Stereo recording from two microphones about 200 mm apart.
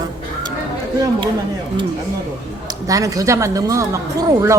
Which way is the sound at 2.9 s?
15° right (ahead or behind).